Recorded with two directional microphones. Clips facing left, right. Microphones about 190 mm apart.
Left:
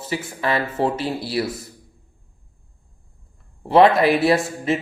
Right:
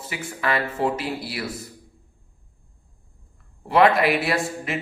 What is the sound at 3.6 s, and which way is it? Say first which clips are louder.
Speech: left 4 dB; 30° left (ahead or behind).